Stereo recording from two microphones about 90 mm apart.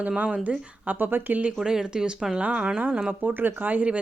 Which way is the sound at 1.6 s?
5° right (ahead or behind).